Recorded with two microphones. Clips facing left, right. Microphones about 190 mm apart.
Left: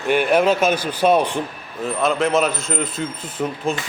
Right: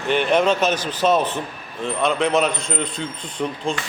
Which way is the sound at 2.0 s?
Centre (ahead or behind).